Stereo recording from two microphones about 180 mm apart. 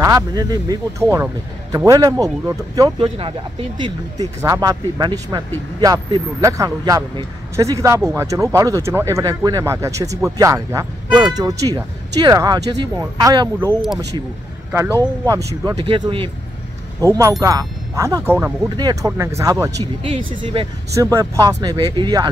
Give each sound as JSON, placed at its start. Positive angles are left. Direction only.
{"t": 0.0, "sound": "speech", "side_deg": -20}
{"t": 17.0, "sound": "speech", "side_deg": -20}
{"t": 18.8, "sound": "speech", "side_deg": -20}
{"t": 20.0, "sound": "speech", "side_deg": -30}
{"t": 20.9, "sound": "speech", "side_deg": -15}